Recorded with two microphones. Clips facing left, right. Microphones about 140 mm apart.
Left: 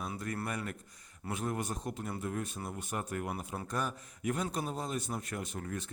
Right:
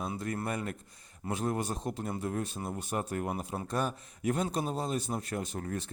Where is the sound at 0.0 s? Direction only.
25° right (ahead or behind).